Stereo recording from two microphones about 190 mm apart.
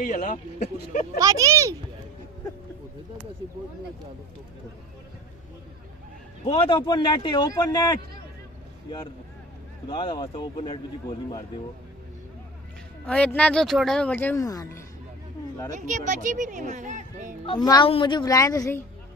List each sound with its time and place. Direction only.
0.0 s speech: 40° left (ahead or behind)
1.2 s speech: 15° right (ahead or behind)
6.4 s a man's voice: 30° left (ahead or behind)
9.8 s a man's voice: 25° left (ahead or behind)
13.0 s speech: 5° left (ahead or behind)
15.7 s speech: 40° right (ahead or behind)
17.6 s a man's voice: 25° left (ahead or behind)